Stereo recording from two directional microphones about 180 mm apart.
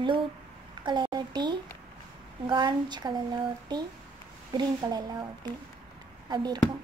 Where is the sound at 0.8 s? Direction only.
25° right (ahead or behind).